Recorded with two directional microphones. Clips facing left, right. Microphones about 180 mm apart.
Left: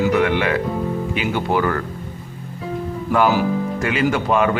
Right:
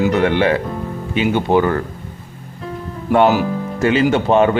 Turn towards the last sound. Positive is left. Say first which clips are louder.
# right 5 dB
turn(degrees=-30)  # may be behind; listen again after turning